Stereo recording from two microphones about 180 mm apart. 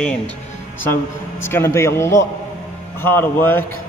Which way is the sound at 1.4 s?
15° left (ahead or behind).